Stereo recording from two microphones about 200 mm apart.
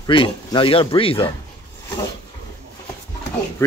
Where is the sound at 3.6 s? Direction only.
15° left (ahead or behind).